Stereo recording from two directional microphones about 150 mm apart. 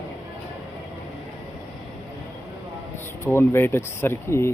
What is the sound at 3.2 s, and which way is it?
Speech, 15° left (ahead or behind).